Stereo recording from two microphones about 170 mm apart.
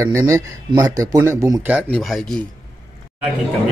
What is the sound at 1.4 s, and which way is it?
Speech, 5° right (ahead or behind).